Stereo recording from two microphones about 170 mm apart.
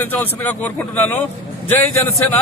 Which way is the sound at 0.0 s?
10° left (ahead or behind).